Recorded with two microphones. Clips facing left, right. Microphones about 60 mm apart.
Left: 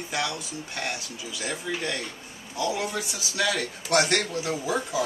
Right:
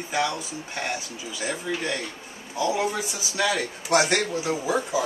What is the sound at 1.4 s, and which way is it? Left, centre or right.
A man's voice, centre.